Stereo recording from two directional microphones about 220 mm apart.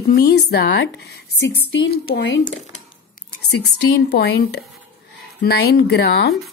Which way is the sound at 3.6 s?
50° left (ahead or behind).